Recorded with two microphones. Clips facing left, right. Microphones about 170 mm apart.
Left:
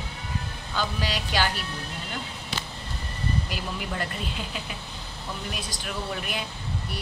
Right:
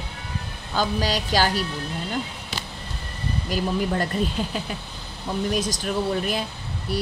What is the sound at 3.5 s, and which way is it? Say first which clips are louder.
Speech: right 9 dB; 40° right (ahead or behind).